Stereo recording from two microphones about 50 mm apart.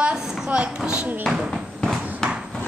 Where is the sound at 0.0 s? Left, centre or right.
Right.